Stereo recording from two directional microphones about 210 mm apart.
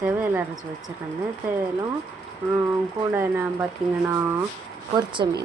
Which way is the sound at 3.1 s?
10° right (ahead or behind).